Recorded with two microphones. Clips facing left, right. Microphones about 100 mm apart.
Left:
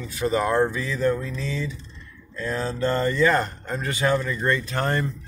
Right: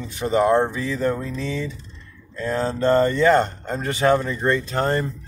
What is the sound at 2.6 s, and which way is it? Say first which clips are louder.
Speech: right 6 dB; 30° right (ahead or behind).